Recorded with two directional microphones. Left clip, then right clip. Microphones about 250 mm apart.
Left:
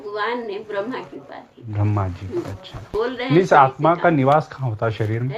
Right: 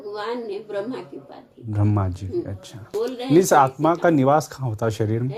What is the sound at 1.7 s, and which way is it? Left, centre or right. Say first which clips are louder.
Speech: even; right.